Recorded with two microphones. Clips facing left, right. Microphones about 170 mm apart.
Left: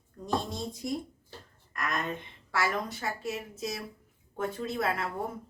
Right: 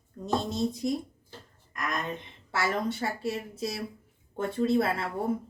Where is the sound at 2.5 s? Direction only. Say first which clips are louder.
Right 2 dB; 30° right (ahead or behind).